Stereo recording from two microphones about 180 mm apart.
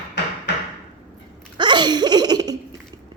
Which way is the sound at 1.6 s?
25° right (ahead or behind).